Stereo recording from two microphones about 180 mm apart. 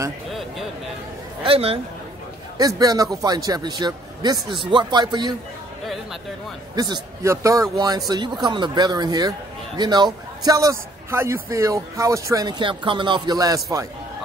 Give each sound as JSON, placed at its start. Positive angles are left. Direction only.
{"t": 0.3, "sound": "a sound", "side_deg": 0}
{"t": 1.4, "sound": "speech", "side_deg": -30}
{"t": 2.5, "sound": "a man's voice", "side_deg": -20}
{"t": 6.7, "sound": "a man's voice", "side_deg": -20}